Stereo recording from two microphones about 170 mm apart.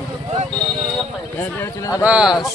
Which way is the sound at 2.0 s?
5° right (ahead or behind).